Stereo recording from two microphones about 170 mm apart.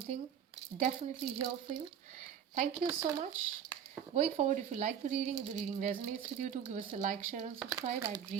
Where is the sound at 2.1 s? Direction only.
45° right (ahead or behind).